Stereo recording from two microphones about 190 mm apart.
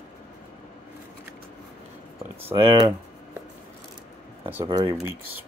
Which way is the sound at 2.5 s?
20° right (ahead or behind).